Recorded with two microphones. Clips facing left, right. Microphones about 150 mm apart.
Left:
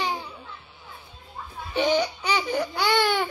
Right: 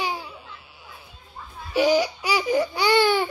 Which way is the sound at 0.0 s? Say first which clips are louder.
Even; 5° right (ahead or behind).